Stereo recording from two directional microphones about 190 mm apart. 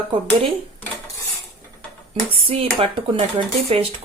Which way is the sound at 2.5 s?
30° right (ahead or behind).